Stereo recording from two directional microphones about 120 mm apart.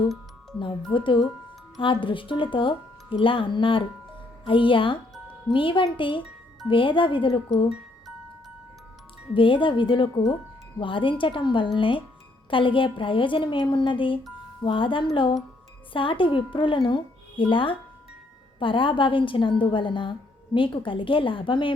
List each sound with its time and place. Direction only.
0.9 s a woman's voice: 45° left (ahead or behind)
7.5 s music: centre (ahead or behind)
9.3 s a woman's voice: 45° left (ahead or behind)